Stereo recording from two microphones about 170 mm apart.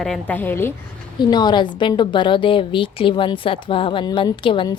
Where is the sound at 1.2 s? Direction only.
25° left (ahead or behind).